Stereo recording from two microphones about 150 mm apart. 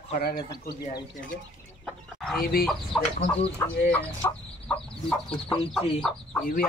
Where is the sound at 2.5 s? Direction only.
90° left.